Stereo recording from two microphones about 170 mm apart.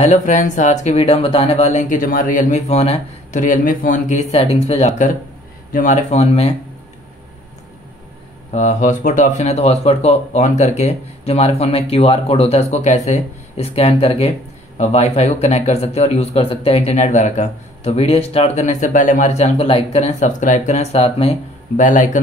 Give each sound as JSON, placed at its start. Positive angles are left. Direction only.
{"t": 0.0, "sound": "speech", "side_deg": 45}
{"t": 4.3, "sound": "speech", "side_deg": 35}
{"t": 6.0, "sound": "speech", "side_deg": 35}
{"t": 8.5, "sound": "speech", "side_deg": 45}
{"t": 21.7, "sound": "speech", "side_deg": 50}